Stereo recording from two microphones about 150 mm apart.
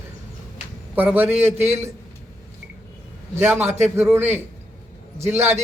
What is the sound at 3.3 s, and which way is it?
Speech, 15° right (ahead or behind).